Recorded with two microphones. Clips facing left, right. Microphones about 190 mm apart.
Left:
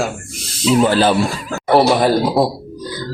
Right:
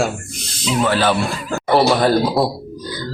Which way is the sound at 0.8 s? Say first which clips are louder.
Left 1 dB; 30° left (ahead or behind).